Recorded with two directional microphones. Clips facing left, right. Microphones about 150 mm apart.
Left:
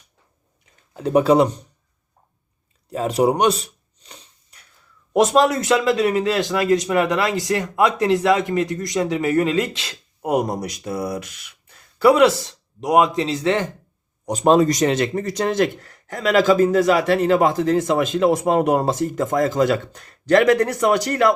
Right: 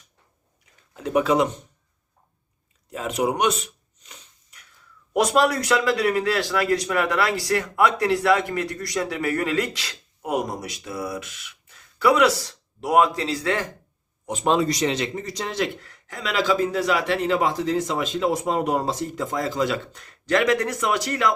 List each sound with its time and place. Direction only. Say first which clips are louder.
0.9 s speech: left 5 dB; 35° left (ahead or behind)
2.9 s a sound: left 6 dB; 35° left (ahead or behind)
5.1 s a man's voice: left 4 dB; 25° left (ahead or behind)
10.2 s a man's voice: left 5 dB; 40° left (ahead or behind); by 13.7 s 25° left (ahead or behind)
14.3 s speech: left 6 dB; 40° left (ahead or behind)